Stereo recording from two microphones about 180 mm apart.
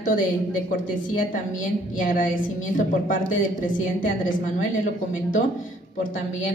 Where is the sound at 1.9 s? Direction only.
50° left (ahead or behind).